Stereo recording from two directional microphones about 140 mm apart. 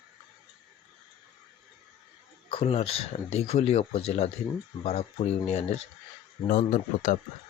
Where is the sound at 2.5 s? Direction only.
45° left (ahead or behind).